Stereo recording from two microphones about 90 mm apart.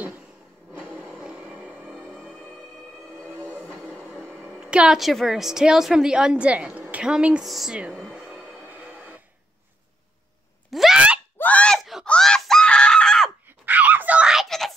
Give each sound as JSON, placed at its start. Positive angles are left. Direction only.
{"t": 1.1, "sound": "vehicle", "side_deg": -15}
{"t": 3.3, "sound": "train", "side_deg": 20}
{"t": 3.9, "sound": "music", "side_deg": -5}
{"t": 4.3, "sound": "a woman's voice", "side_deg": -15}
{"t": 8.1, "sound": "music", "side_deg": -15}
{"t": 10.7, "sound": "a sound", "side_deg": 0}
{"t": 11.3, "sound": "a sound", "side_deg": 15}
{"t": 11.8, "sound": "a sound", "side_deg": 0}
{"t": 12.1, "sound": "screaming", "side_deg": 5}
{"t": 13.5, "sound": "wail", "side_deg": -20}